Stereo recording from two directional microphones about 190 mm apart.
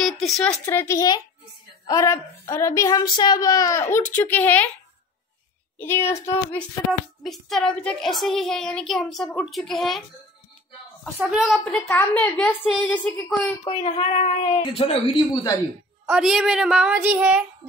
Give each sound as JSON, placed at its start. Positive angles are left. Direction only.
{"t": 0.0, "sound": "a woman's voice", "side_deg": 0}
{"t": 5.8, "sound": "a woman's voice", "side_deg": 10}
{"t": 6.9, "sound": "speech", "side_deg": 0}
{"t": 11.1, "sound": "a woman's voice", "side_deg": -5}
{"t": 13.7, "sound": "speech", "side_deg": 30}
{"t": 16.1, "sound": "speech", "side_deg": 0}